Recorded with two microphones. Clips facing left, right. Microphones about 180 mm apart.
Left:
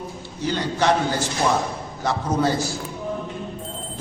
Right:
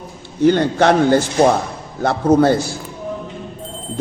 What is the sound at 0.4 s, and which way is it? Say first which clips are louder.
A man's voice: right 8 dB; 60° right (ahead or behind).